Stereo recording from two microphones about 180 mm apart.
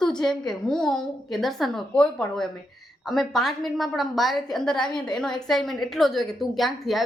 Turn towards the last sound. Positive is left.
turn(degrees=0)  # may be behind; listen again after turning